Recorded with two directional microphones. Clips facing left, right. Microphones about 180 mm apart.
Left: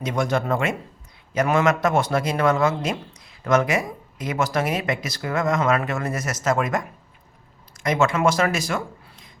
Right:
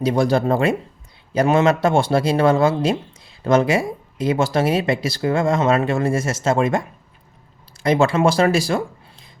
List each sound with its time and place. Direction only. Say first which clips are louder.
0.0 s speech: right 6 dB; 35° right (ahead or behind)